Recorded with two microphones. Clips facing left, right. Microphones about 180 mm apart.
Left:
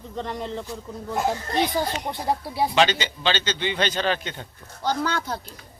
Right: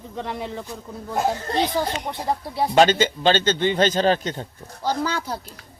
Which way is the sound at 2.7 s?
45° right (ahead or behind).